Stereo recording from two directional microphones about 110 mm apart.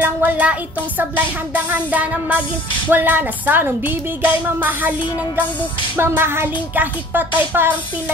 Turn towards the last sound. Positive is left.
turn(degrees=-20)  # may be behind; listen again after turning